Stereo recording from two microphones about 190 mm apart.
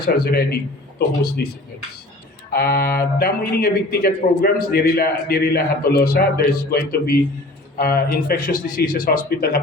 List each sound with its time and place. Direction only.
0.0 s a man's voice: 55° left (ahead or behind)
2.5 s speech: 50° left (ahead or behind)